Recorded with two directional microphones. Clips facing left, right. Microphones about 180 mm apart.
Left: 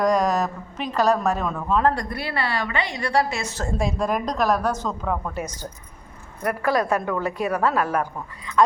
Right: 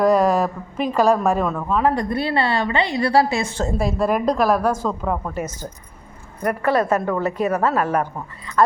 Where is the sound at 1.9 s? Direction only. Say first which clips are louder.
Right 7 dB; 25° right (ahead or behind).